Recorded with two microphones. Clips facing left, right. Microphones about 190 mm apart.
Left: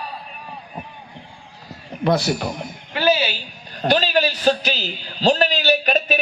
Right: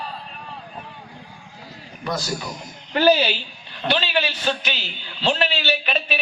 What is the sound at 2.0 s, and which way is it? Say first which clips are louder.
Speech: left 8 dB; 65° left (ahead or behind).